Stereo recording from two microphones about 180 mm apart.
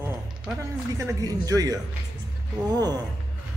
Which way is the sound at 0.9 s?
20° right (ahead or behind).